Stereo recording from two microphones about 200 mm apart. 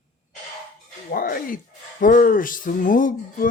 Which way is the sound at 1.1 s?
45° left (ahead or behind).